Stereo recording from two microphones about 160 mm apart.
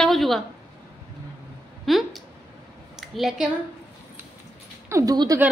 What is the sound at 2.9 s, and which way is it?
Speech, centre (ahead or behind).